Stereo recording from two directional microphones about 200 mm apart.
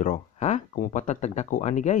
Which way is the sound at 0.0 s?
40° left (ahead or behind).